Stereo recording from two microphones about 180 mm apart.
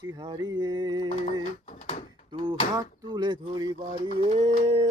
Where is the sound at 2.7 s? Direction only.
25° right (ahead or behind).